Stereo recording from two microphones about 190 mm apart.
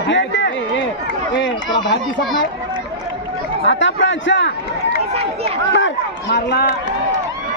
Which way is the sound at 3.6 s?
75° left (ahead or behind).